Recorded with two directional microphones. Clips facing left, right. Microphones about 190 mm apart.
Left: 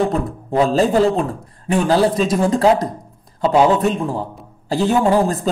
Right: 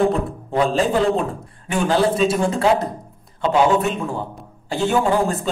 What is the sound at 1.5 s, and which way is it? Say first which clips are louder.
A man's voice: left 4 dB; 35° left (ahead or behind).